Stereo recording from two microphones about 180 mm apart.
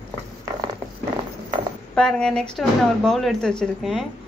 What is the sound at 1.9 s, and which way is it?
Speech, 5° left (ahead or behind).